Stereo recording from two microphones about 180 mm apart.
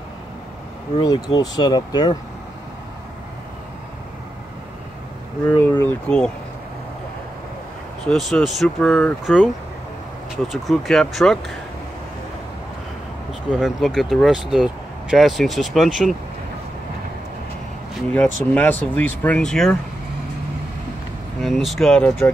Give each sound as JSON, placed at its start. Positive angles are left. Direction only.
{"t": 1.0, "sound": "speech", "side_deg": 25}
{"t": 5.5, "sound": "speech", "side_deg": 10}
{"t": 8.1, "sound": "speech", "side_deg": 0}
{"t": 13.3, "sound": "speech", "side_deg": 0}
{"t": 18.1, "sound": "speech", "side_deg": 10}
{"t": 21.4, "sound": "speech", "side_deg": 0}